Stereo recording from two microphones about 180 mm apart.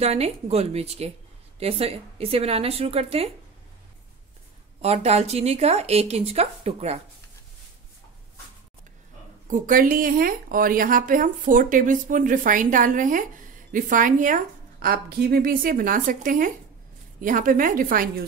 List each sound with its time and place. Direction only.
0.0 s speech: 35° right (ahead or behind)
4.8 s speech: 35° right (ahead or behind)
9.5 s a woman's voice: 50° right (ahead or behind)